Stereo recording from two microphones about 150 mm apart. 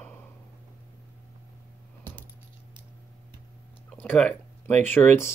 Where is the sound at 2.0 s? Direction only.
10° left (ahead or behind).